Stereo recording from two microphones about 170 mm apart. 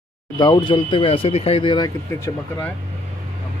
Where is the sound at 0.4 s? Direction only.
25° left (ahead or behind).